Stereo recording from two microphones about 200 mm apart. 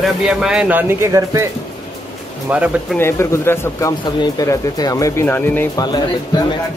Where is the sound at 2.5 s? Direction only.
5° right (ahead or behind).